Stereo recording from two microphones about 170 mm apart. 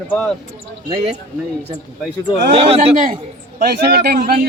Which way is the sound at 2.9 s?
55° right (ahead or behind).